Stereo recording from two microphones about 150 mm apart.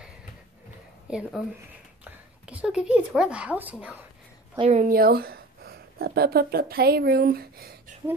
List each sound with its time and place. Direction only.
1.1 s a woman's voice: 5° right (ahead or behind)
4.6 s a woman's voice: 45° right (ahead or behind)
4.8 s speech: 80° right